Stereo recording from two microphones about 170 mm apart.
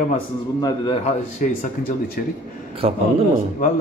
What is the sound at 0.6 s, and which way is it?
A man's voice, 25° left (ahead or behind).